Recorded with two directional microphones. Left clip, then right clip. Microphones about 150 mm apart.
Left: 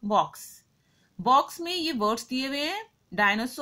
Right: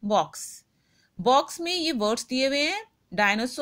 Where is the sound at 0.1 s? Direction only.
35° right (ahead or behind).